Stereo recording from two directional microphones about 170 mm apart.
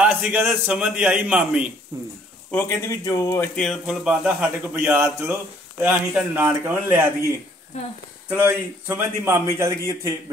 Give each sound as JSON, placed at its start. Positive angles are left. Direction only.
{"t": 0.0, "sound": "speech", "side_deg": -10}
{"t": 1.9, "sound": "speech", "side_deg": -20}
{"t": 2.5, "sound": "speech", "side_deg": 10}